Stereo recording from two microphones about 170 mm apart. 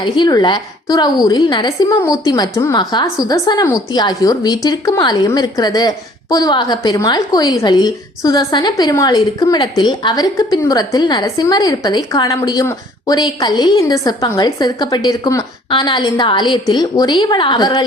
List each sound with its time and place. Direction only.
0.0 s a woman's voice: 25° left (ahead or behind)